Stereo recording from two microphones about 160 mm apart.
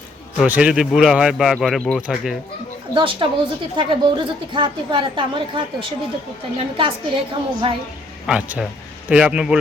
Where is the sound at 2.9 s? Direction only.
30° right (ahead or behind).